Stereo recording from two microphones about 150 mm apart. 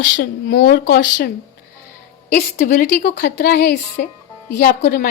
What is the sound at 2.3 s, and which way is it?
Speech, 80° left.